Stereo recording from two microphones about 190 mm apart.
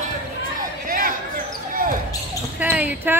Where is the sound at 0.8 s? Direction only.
50° right (ahead or behind).